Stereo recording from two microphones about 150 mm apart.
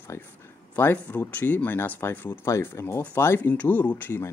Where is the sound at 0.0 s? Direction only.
15° left (ahead or behind).